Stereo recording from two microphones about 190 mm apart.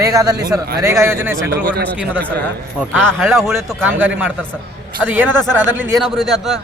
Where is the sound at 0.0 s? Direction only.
20° right (ahead or behind).